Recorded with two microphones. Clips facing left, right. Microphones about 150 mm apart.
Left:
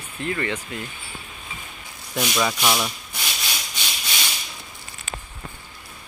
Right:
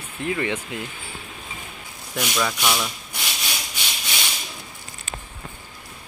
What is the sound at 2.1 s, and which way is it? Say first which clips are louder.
Speech: left 2 dB; 10° left (ahead or behind).